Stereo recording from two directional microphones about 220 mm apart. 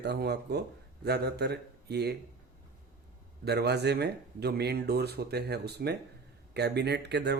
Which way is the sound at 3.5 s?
50° right (ahead or behind).